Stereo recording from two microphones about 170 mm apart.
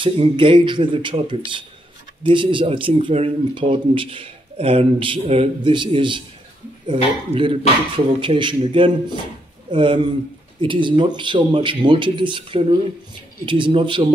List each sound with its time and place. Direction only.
0.0 s speech: 30° right (ahead or behind)